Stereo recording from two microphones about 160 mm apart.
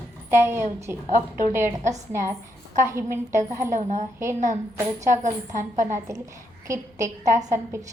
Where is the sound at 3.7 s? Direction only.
50° right (ahead or behind).